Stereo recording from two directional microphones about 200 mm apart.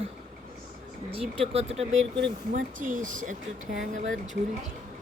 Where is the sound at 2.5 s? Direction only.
40° right (ahead or behind).